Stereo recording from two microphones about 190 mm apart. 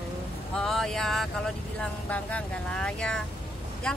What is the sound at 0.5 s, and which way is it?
Speech, centre (ahead or behind).